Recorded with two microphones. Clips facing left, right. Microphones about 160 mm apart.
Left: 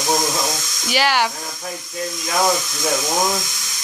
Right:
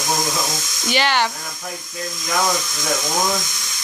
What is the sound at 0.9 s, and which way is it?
Speech, 5° left (ahead or behind).